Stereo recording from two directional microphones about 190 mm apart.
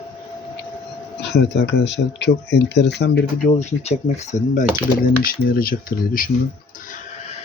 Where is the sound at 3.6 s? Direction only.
35° left (ahead or behind).